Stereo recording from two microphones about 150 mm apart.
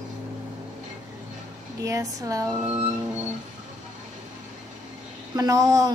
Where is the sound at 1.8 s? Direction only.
20° right (ahead or behind).